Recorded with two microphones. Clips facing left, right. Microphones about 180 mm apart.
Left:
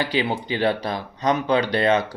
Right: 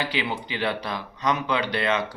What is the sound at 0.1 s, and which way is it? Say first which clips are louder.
Speech: left 5 dB; 40° left (ahead or behind).